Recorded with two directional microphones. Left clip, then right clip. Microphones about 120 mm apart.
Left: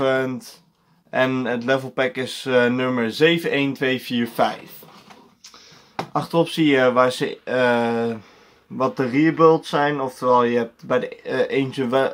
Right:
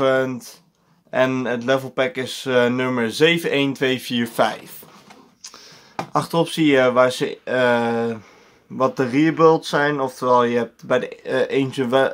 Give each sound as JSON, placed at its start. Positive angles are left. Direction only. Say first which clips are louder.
{"t": 0.0, "sound": "speech", "louder": "right 2 dB", "side_deg": -25}
{"t": 6.1, "sound": "speech", "louder": "even", "side_deg": -40}